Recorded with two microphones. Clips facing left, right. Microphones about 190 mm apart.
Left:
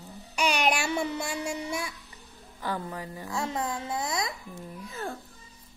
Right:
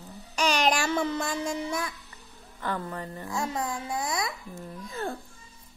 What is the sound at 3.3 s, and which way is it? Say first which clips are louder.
Speech: even; 25° left (ahead or behind).